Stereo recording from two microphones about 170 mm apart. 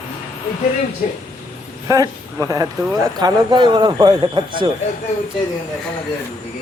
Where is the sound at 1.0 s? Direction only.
45° left (ahead or behind).